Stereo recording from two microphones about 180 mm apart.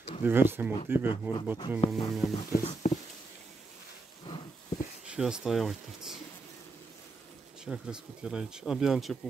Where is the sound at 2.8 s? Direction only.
40° left (ahead or behind).